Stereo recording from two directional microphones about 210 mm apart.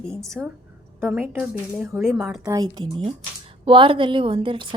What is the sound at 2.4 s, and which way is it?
A woman's voice, 15° right (ahead or behind).